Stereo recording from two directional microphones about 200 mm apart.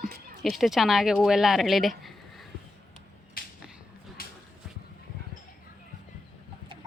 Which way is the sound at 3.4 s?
45° left (ahead or behind).